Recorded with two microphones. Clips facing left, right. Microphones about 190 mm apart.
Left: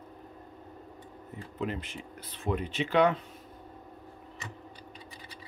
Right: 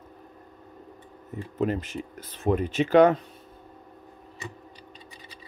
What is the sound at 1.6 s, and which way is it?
Speech, 45° right (ahead or behind).